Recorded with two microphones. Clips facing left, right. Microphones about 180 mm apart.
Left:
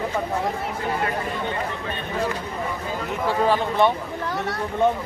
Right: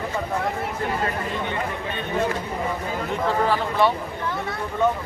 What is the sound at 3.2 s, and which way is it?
Speech, 15° left (ahead or behind).